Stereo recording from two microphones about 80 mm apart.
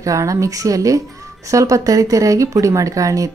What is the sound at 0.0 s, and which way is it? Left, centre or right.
Speech, right.